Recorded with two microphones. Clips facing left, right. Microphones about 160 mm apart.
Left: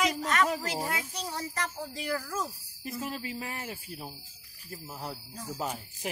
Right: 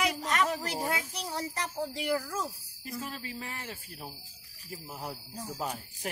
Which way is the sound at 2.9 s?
20° left (ahead or behind).